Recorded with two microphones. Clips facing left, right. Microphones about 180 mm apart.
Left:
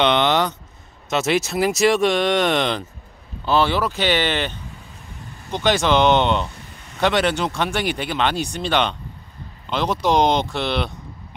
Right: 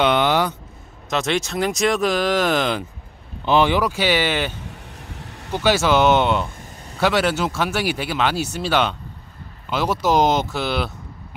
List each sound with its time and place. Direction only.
0.0 s a sound: 5° right (ahead or behind)
1.1 s speech: 5° left (ahead or behind)
3.4 s speech: 15° right (ahead or behind)
5.0 s vehicle: 80° right
5.5 s speech: 5° right (ahead or behind)